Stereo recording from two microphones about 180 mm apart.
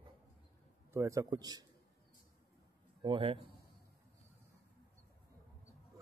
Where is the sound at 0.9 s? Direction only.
20° right (ahead or behind).